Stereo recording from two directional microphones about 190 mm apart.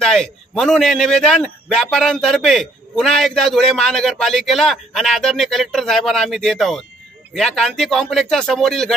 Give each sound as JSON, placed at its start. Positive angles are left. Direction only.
{"t": 0.0, "sound": "a man's voice", "side_deg": 5}